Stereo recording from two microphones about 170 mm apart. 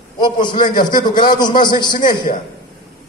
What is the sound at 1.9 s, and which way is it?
Speech, 60° left (ahead or behind).